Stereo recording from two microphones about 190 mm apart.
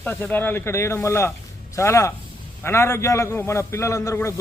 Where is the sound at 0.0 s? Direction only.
10° left (ahead or behind).